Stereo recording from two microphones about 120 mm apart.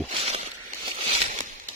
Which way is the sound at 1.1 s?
85° right.